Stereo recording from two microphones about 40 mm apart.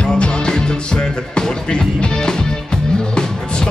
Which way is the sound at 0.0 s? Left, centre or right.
Left.